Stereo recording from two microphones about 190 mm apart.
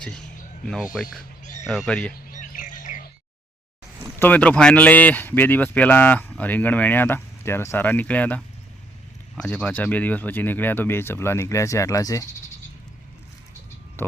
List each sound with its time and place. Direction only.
0.6 s speech: 5° left (ahead or behind)
2.3 s bird: 45° left (ahead or behind)
4.2 s speech: 10° left (ahead or behind)
9.4 s speech: 5° left (ahead or behind)
14.0 s speech: 15° left (ahead or behind)